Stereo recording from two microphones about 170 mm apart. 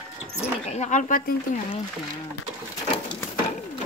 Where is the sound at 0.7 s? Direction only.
45° left (ahead or behind).